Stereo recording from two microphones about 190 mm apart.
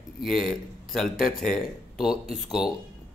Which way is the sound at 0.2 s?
Centre (ahead or behind).